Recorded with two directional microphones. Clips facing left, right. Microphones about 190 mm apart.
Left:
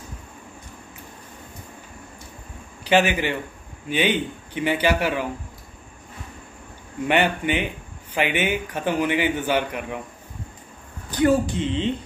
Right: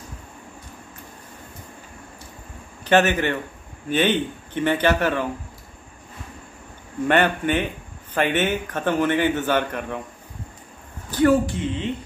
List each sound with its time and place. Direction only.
2.8 s a man's voice: 10° left (ahead or behind)
7.1 s a man's voice: 10° left (ahead or behind)
11.1 s a man's voice: 15° left (ahead or behind)